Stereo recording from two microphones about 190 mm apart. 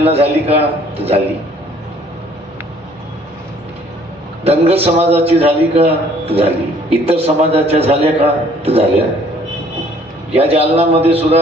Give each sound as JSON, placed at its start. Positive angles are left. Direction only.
{"t": 0.0, "sound": "a man's voice", "side_deg": -30}
{"t": 4.4, "sound": "a man's voice", "side_deg": -30}
{"t": 10.3, "sound": "a man's voice", "side_deg": -30}